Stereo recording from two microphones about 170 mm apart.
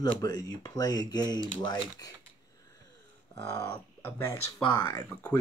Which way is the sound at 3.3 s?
15° left (ahead or behind).